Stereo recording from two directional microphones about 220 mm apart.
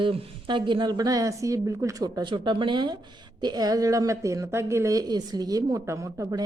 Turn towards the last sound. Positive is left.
turn(degrees=-15)  # may be behind; listen again after turning